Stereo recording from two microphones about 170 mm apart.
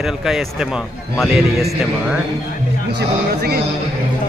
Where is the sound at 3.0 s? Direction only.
70° right (ahead or behind).